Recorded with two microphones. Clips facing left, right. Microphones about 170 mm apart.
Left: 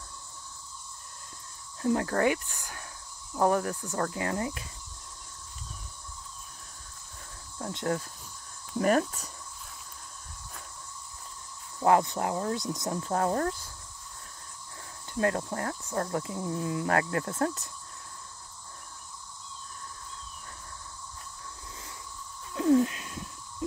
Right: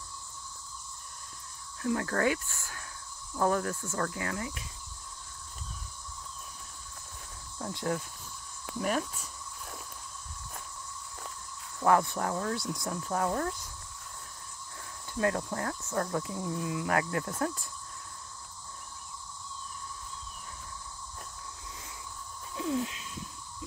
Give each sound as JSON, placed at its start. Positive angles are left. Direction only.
{"t": 1.8, "sound": "speech", "side_deg": 25}
{"t": 8.7, "sound": "speech", "side_deg": 50}
{"t": 11.8, "sound": "speech", "side_deg": 20}
{"t": 13.1, "sound": "speech", "side_deg": 35}
{"t": 15.1, "sound": "speech", "side_deg": 30}
{"t": 22.5, "sound": "a sound", "side_deg": 55}